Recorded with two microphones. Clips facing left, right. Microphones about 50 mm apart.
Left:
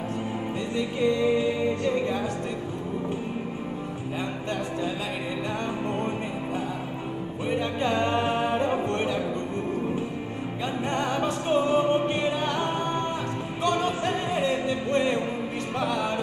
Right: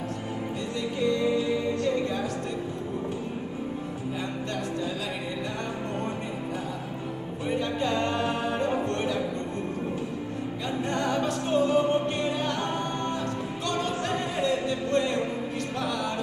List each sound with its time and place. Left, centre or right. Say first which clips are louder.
0.7 s music: left 2 dB; left
7.4 s music: left 1 dB; left
10.9 s music: even; left
13.7 s music: left 4 dB; left